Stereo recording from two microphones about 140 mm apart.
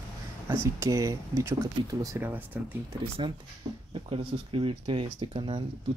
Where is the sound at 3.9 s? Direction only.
40° right (ahead or behind).